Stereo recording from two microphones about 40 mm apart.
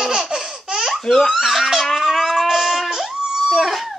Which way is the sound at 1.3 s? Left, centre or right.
Centre.